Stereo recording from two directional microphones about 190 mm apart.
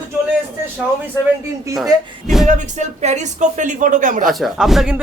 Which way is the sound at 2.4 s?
40° right (ahead or behind).